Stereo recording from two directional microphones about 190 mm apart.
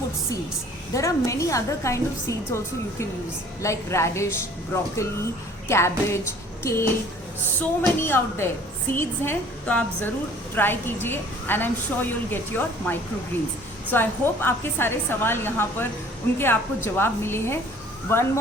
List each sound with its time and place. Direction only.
0.9 s a woman's voice: 15° left (ahead or behind)
3.6 s a woman's voice: 15° left (ahead or behind)